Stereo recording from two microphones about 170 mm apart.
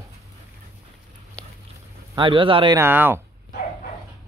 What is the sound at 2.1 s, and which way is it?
Speech, 30° right (ahead or behind).